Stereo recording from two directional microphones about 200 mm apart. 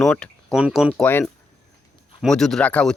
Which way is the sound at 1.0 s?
10° left (ahead or behind).